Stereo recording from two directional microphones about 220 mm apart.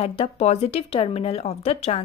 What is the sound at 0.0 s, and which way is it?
A woman's voice, 25° left (ahead or behind).